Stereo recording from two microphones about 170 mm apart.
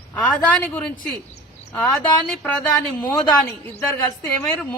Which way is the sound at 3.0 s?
15° left (ahead or behind).